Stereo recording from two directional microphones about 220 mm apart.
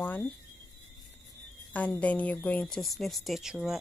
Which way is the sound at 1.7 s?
5° left (ahead or behind).